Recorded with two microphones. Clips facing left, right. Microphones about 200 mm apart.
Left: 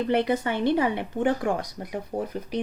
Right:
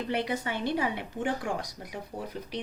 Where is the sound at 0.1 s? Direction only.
55° left (ahead or behind).